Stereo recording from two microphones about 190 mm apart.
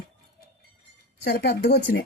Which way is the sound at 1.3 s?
55° left (ahead or behind).